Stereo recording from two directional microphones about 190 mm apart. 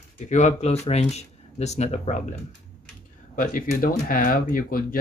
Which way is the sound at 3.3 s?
45° left (ahead or behind).